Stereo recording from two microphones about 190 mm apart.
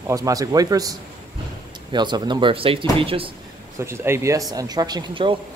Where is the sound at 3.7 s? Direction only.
15° right (ahead or behind).